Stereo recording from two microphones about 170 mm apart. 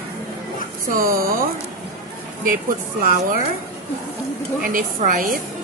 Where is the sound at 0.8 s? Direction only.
55° right (ahead or behind).